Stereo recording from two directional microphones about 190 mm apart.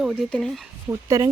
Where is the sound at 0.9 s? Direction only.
15° right (ahead or behind).